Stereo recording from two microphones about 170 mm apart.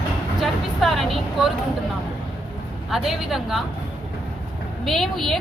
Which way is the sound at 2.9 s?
Centre (ahead or behind).